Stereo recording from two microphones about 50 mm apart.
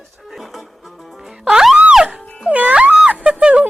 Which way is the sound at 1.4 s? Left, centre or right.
Centre.